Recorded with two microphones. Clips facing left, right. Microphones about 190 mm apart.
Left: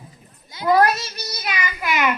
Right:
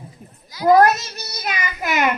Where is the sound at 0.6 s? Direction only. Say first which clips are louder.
Right 4 dB; 45° right (ahead or behind).